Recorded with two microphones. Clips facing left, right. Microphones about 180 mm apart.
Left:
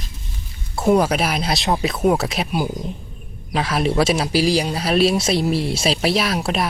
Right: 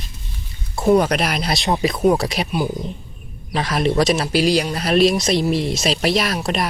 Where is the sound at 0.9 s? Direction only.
5° left (ahead or behind).